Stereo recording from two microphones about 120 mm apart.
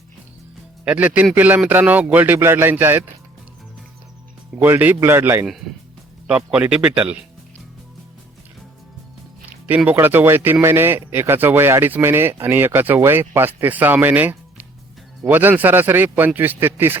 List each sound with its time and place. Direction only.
0.9 s speech: 10° right (ahead or behind)
4.6 s speech: 15° right (ahead or behind)
9.5 s speech: 15° right (ahead or behind)